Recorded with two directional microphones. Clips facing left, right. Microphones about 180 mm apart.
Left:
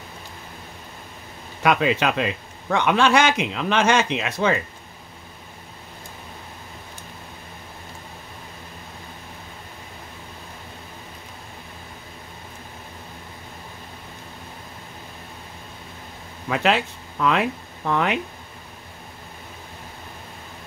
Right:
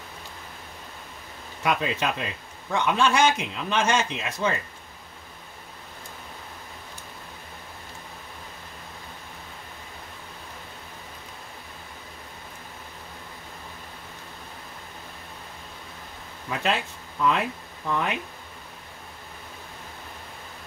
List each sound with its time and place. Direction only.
1.6 s a man's voice: 80° left
16.4 s speech: 75° left (ahead or behind)